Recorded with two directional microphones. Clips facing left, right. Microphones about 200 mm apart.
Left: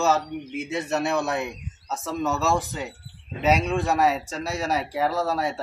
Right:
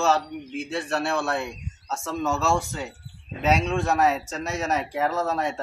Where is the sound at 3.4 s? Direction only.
Centre (ahead or behind).